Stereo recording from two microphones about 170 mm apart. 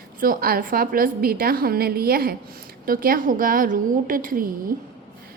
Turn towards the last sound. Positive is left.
turn(degrees=-55)  # may be behind; listen again after turning